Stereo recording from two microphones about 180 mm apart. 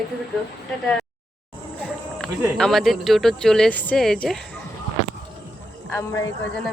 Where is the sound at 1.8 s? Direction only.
5° left (ahead or behind).